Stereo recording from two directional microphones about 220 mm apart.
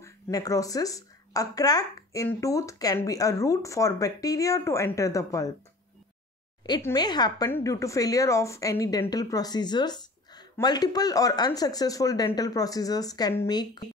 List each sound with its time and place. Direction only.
0.0 s speech: 15° left (ahead or behind)
6.6 s speech: 15° left (ahead or behind)